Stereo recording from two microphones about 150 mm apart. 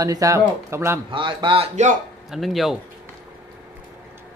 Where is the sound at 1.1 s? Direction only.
35° right (ahead or behind).